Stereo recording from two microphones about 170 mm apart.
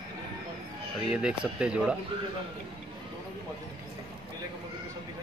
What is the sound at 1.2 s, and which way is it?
Speech, 5° right (ahead or behind).